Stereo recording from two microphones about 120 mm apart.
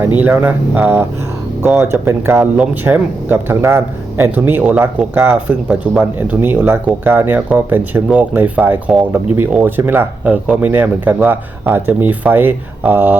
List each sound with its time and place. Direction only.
0.2 s speech: 15° right (ahead or behind)
5.6 s speech: 5° right (ahead or behind)
6.0 s speech: 15° right (ahead or behind)